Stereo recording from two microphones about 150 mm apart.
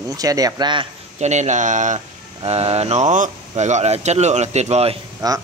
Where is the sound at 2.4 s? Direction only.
45° right (ahead or behind).